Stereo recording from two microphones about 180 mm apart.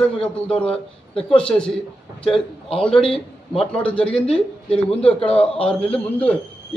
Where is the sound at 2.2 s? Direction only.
30° left (ahead or behind).